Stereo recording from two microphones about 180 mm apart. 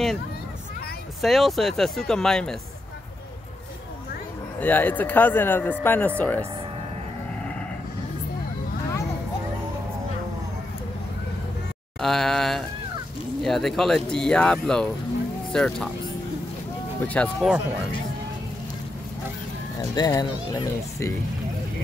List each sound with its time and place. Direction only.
1.2 s speech: centre (ahead or behind)
4.6 s speech: 10° left (ahead or behind)
12.0 s speech: centre (ahead or behind)
17.0 s speech: 10° left (ahead or behind)
19.8 s a child's voice: 20° left (ahead or behind)